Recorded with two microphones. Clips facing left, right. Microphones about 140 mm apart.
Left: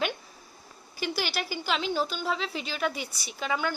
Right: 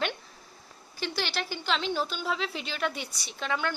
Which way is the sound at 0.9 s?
10° left (ahead or behind).